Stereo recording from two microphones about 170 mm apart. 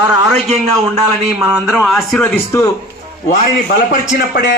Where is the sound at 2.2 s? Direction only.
15° left (ahead or behind).